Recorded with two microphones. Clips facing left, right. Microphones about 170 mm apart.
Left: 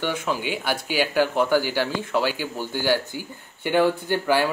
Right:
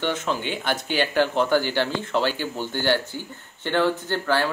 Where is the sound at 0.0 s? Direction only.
10° left (ahead or behind).